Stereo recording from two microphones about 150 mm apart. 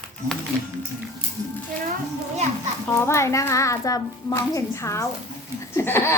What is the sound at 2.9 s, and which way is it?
A child's voice, 20° left (ahead or behind).